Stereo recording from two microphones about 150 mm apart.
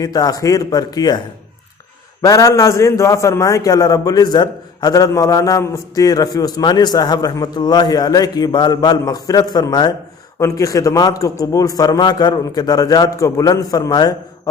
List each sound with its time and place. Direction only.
0.0 s a man's voice: 25° left (ahead or behind)
2.2 s a man's voice: 20° left (ahead or behind)